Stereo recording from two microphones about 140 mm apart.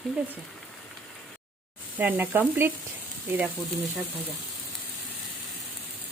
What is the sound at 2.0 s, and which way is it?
Speech, 15° right (ahead or behind).